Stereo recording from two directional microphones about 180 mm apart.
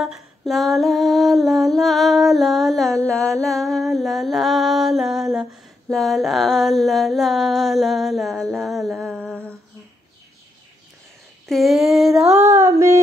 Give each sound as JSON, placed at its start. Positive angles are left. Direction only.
{"t": 0.0, "sound": "female singing", "side_deg": 0}
{"t": 3.1, "sound": "music", "side_deg": 5}
{"t": 11.4, "sound": "a sound", "side_deg": 0}
{"t": 12.4, "sound": "female singing", "side_deg": -20}